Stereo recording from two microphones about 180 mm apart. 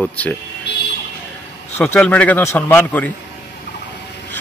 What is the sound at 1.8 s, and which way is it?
Speech, 5° left (ahead or behind).